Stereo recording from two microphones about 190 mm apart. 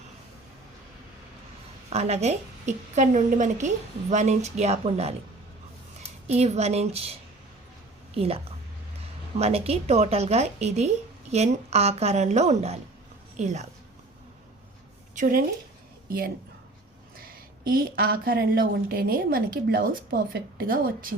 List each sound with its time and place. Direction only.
1.9 s speech: 35° right (ahead or behind)
6.2 s a woman's voice: 35° right (ahead or behind)
9.4 s speech: 30° right (ahead or behind)
15.1 s a woman's voice: 45° right (ahead or behind)